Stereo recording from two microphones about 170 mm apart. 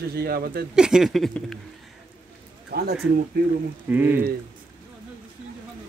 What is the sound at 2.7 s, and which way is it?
Speech, 65° right (ahead or behind).